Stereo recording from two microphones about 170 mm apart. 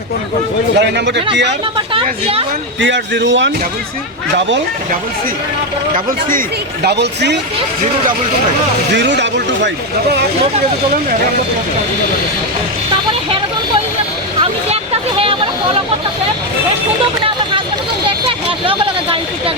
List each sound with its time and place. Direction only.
0.8 s speech: 90° right
1.9 s speech: 30° right (ahead or behind)
2.8 s speech: 90° right
6.8 s speech: 80° right
9.0 s speech: 90° right
18.3 s a sound: 30° right (ahead or behind)